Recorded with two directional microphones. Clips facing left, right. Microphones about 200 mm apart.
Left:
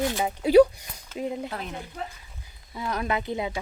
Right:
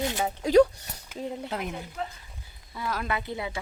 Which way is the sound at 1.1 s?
10° right (ahead or behind).